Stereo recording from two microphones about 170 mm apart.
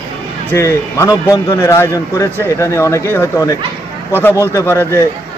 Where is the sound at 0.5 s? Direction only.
15° left (ahead or behind).